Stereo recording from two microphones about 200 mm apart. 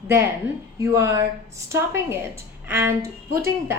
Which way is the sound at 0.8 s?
15° right (ahead or behind).